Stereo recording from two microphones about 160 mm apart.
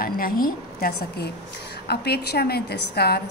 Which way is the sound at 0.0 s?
65° left (ahead or behind).